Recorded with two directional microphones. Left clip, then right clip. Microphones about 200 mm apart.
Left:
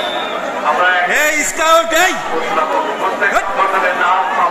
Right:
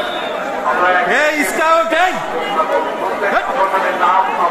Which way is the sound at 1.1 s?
20° left (ahead or behind).